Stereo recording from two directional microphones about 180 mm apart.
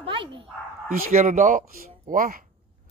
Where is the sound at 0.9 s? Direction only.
50° right (ahead or behind).